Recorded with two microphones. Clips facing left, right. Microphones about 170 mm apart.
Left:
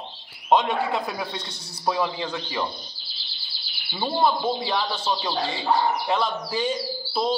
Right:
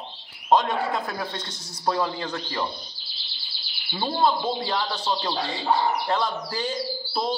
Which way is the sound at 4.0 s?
10° left (ahead or behind).